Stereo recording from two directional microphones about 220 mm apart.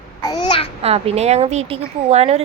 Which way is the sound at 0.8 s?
25° right (ahead or behind).